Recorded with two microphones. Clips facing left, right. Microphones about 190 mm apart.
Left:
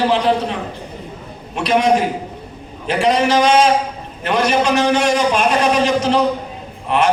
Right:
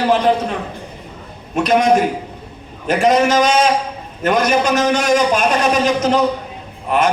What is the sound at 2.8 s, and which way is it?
A man's voice, 45° right (ahead or behind).